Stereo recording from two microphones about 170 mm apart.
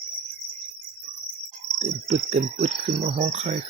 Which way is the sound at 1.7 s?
40° right (ahead or behind).